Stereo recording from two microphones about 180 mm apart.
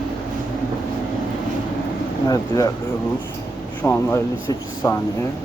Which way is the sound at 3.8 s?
10° left (ahead or behind).